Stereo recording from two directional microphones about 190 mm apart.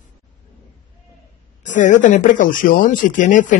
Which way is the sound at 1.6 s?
40° left (ahead or behind).